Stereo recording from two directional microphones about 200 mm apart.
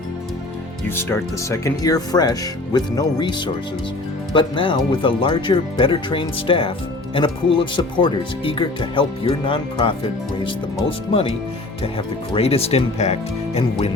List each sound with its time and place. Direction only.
0.9 s speech: 10° left (ahead or behind); by 13.9 s 30° left (ahead or behind)